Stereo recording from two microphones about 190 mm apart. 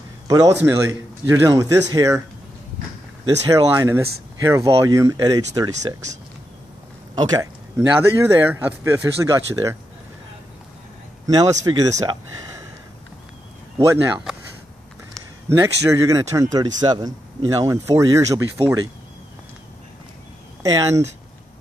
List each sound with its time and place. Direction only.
0.3 s speech: 20° right (ahead or behind)
3.4 s speech: 15° right (ahead or behind)
7.7 s speech: 15° right (ahead or behind)
11.2 s speech: 20° right (ahead or behind)
13.7 s speech: 15° right (ahead or behind)
15.5 s speech: 15° right (ahead or behind)
20.6 s speech: 15° right (ahead or behind)